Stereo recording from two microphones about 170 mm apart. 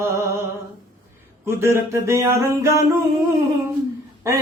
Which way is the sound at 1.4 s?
15° right (ahead or behind).